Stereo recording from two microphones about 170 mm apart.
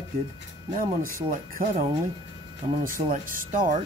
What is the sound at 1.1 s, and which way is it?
Speech, 55° right (ahead or behind).